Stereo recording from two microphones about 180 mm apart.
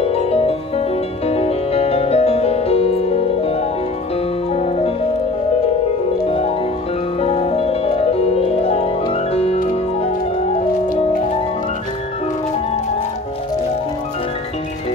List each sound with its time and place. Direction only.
0.0 s music: 35° left (ahead or behind)
6.2 s music: 35° left (ahead or behind)